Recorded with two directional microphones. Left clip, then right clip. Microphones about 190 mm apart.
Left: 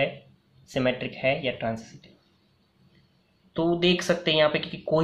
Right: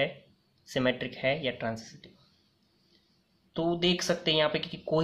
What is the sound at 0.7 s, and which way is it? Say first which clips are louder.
Speech: left 3 dB; 25° right (ahead or behind).